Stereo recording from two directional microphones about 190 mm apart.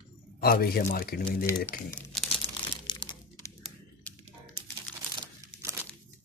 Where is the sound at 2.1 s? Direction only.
Centre (ahead or behind).